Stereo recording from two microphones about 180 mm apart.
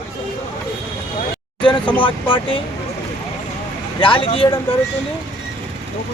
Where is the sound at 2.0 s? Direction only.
30° left (ahead or behind).